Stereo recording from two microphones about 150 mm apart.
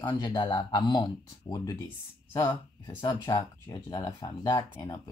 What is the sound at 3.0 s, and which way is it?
Speech, 25° left (ahead or behind).